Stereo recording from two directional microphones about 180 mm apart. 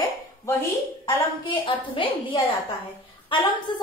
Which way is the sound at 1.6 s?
30° left (ahead or behind).